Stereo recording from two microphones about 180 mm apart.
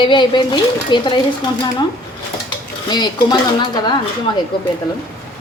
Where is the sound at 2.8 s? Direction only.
25° left (ahead or behind).